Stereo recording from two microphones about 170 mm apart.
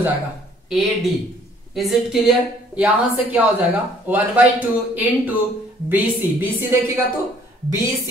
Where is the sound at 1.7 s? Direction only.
Centre (ahead or behind).